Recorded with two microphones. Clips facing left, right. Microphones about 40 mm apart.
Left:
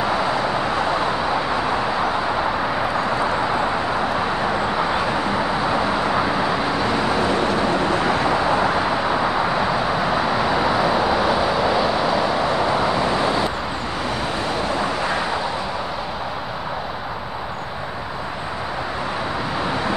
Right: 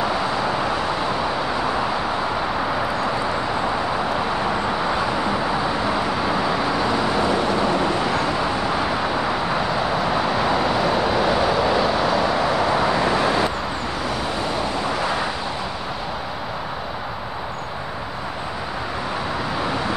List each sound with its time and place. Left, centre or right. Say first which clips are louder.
0.0 s vehicle: left 1 dB; centre
3.6 s vehicle: left 1 dB; centre